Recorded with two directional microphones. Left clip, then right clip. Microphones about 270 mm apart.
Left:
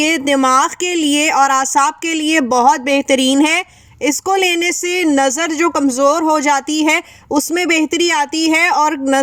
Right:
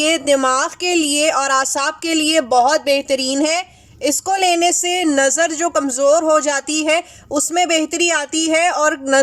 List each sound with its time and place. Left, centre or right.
0.0 s speech: left